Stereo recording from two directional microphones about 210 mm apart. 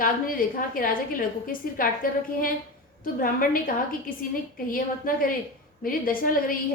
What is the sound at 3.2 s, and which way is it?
A woman's voice, 40° left (ahead or behind).